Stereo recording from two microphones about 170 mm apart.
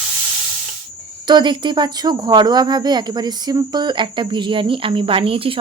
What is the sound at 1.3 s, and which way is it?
Speech, 25° right (ahead or behind).